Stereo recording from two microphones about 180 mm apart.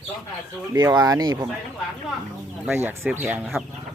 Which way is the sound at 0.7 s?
15° right (ahead or behind).